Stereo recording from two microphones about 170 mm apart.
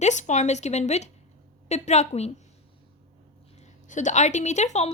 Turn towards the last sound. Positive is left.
turn(degrees=40)  # may be behind; listen again after turning